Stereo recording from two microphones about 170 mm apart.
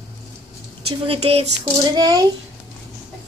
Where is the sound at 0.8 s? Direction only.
35° right (ahead or behind).